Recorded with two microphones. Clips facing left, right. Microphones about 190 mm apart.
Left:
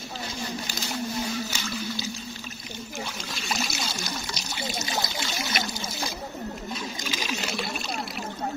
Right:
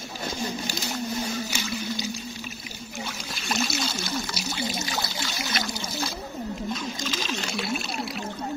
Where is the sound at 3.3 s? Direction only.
Centre (ahead or behind).